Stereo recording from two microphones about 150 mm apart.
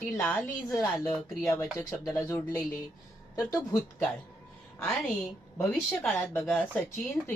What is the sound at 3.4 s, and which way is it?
Speech, 25° left (ahead or behind).